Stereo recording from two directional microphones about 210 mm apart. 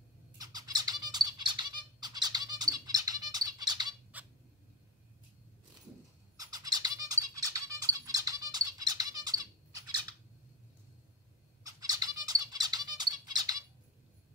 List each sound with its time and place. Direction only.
0.4 s bird: 20° right (ahead or behind)
4.1 s cat: 5° right (ahead or behind)
6.3 s a sound: 15° right (ahead or behind)
11.6 s bird: 20° right (ahead or behind)